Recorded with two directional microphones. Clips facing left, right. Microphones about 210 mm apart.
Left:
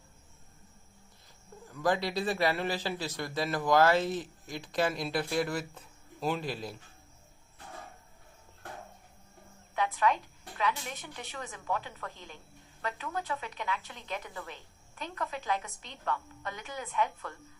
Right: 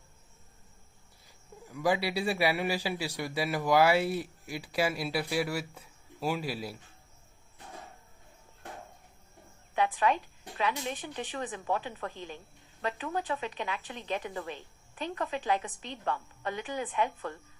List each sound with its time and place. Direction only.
1.6 s a man's voice: 10° right (ahead or behind)
9.7 s a woman's voice: 15° right (ahead or behind)